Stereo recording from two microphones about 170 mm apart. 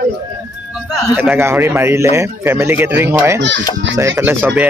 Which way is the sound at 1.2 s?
10° right (ahead or behind).